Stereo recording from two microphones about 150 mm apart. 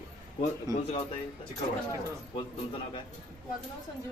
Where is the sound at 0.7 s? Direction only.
25° right (ahead or behind).